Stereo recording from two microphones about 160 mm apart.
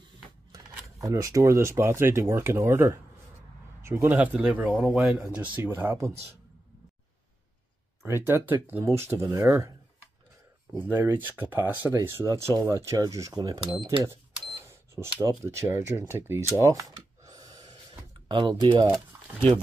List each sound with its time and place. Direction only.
1.0 s speech: 20° right (ahead or behind)
8.0 s speech: 15° right (ahead or behind)
10.8 s speech: 15° right (ahead or behind)
15.0 s speech: 15° right (ahead or behind)
17.2 s gasp: 25° right (ahead or behind)
18.3 s speech: 25° right (ahead or behind)
18.9 s speech: centre (ahead or behind)